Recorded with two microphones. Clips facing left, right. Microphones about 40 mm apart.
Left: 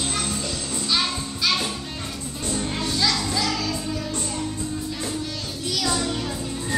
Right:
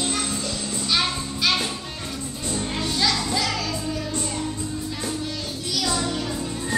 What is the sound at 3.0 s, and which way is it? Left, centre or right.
Music, centre.